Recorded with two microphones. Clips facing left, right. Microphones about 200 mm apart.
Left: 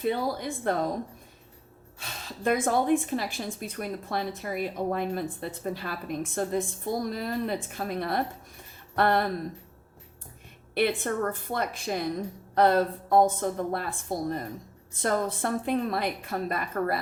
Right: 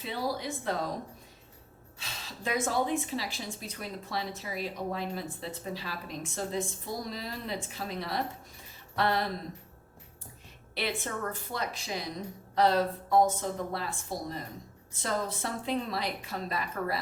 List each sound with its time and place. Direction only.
0.0 s a woman's voice: 50° left (ahead or behind)
2.0 s a woman's voice: 50° left (ahead or behind)
10.8 s a woman's voice: 55° left (ahead or behind)